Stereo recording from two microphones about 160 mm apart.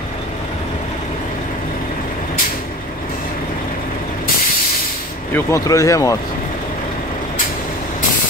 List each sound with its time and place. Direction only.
5.3 s speech: 20° left (ahead or behind)